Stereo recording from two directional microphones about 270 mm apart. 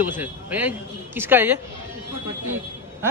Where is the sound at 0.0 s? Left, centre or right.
Centre.